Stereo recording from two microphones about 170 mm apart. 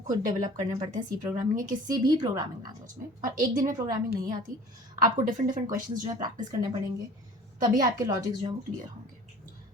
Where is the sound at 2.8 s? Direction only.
50° right (ahead or behind).